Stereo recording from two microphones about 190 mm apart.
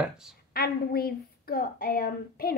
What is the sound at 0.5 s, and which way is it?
A woman's voice, 55° left (ahead or behind).